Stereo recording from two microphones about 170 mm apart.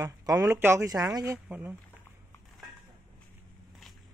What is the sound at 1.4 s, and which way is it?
Speech, 10° right (ahead or behind).